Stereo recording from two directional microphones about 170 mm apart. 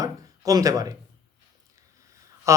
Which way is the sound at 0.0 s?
20° right (ahead or behind).